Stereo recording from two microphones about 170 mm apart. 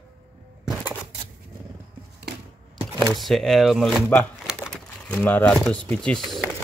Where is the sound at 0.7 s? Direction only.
10° right (ahead or behind).